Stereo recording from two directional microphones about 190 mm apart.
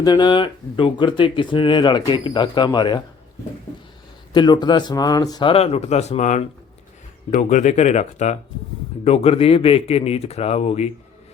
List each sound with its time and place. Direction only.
0.0 s speech: 20° left (ahead or behind)
4.3 s a man's voice: 20° left (ahead or behind)